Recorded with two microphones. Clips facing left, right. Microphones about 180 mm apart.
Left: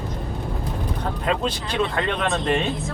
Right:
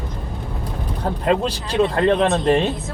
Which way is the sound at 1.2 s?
35° right (ahead or behind).